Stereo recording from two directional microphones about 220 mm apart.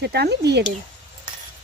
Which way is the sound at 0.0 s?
50° right (ahead or behind).